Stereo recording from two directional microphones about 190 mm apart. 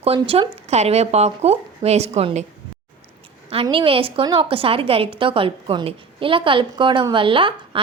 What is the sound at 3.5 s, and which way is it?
A woman's voice, 30° right (ahead or behind).